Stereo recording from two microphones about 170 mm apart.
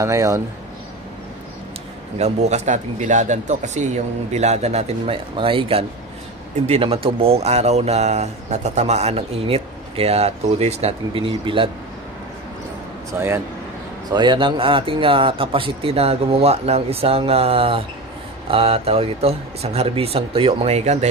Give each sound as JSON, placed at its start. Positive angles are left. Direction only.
{"t": 0.0, "sound": "speech", "side_deg": -15}
{"t": 2.1, "sound": "speech", "side_deg": -40}
{"t": 13.1, "sound": "speech", "side_deg": -10}
{"t": 14.1, "sound": "speech", "side_deg": -25}